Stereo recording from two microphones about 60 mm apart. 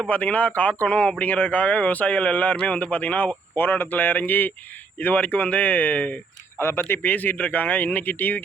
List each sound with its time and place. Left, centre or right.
0.1 s a man's voice: left
3.5 s a man's voice: left
6.6 s a man's voice: left